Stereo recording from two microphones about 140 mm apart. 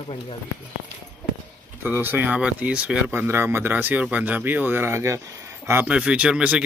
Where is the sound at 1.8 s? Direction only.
15° right (ahead or behind).